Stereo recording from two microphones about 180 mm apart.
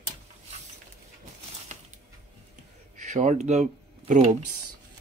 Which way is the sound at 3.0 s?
45° right (ahead or behind).